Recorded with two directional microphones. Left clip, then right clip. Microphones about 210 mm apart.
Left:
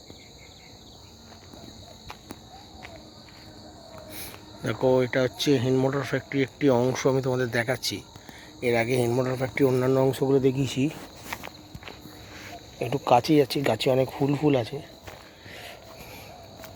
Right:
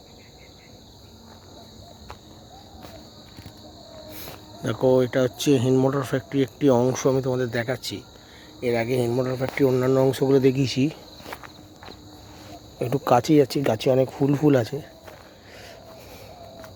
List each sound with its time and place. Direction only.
4.1 s speech: 15° right (ahead or behind)
12.8 s speech: 25° right (ahead or behind)